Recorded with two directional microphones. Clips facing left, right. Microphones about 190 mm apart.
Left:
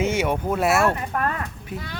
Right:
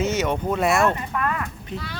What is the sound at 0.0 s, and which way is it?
Speech, 10° left (ahead or behind).